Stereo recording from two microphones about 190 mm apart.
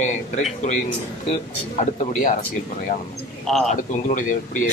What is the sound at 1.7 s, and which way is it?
Speech, 35° left (ahead or behind).